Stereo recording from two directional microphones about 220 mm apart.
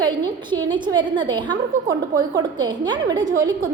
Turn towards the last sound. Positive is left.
turn(degrees=-15)  # may be behind; listen again after turning